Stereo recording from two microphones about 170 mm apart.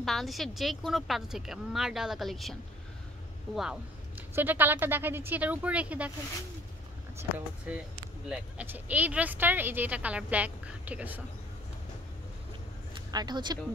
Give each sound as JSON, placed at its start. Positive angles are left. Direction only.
{"t": 0.0, "sound": "a woman's voice", "side_deg": 0}
{"t": 3.5, "sound": "a woman's voice", "side_deg": -5}
{"t": 7.2, "sound": "speech", "side_deg": -10}
{"t": 12.9, "sound": "speech", "side_deg": -25}